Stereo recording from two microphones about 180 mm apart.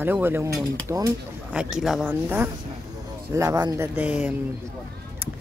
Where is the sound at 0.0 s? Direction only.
10° right (ahead or behind).